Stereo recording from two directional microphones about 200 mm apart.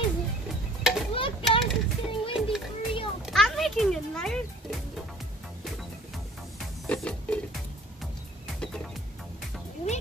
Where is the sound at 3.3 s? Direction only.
Centre (ahead or behind).